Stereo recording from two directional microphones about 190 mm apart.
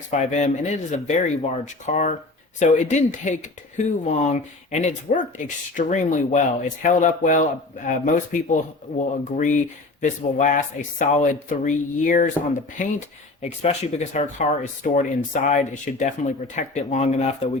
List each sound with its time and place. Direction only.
0.1 s speech: 40° left (ahead or behind)